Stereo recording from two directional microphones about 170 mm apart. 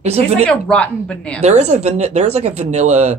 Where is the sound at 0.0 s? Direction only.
35° right (ahead or behind).